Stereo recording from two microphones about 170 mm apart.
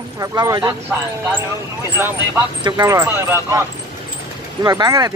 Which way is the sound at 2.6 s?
20° right (ahead or behind).